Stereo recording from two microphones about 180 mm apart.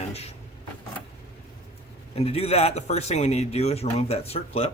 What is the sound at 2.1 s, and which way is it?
Speech, 35° left (ahead or behind).